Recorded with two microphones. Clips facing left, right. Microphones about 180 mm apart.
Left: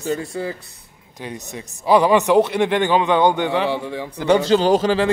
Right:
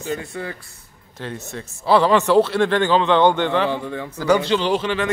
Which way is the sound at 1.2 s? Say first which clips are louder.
Right 1 dB; 15° left (ahead or behind).